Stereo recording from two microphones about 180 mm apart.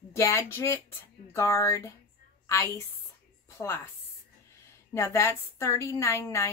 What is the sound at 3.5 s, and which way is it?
Speech, 15° left (ahead or behind).